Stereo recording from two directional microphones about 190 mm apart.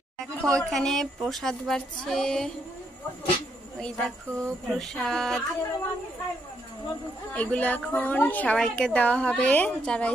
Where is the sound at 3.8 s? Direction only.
5° left (ahead or behind).